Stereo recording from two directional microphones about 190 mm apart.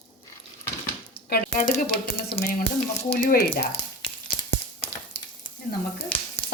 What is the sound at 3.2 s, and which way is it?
Speech, 50° left (ahead or behind).